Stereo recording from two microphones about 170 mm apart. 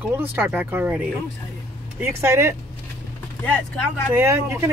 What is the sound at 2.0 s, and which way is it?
Speech, 15° right (ahead or behind).